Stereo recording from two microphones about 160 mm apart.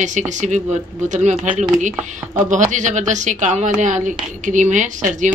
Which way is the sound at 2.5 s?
50° right (ahead or behind).